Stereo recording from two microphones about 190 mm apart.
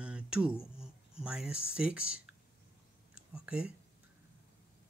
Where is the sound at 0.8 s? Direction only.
5° right (ahead or behind).